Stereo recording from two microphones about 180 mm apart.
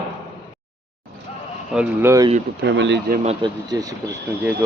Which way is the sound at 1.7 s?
15° right (ahead or behind).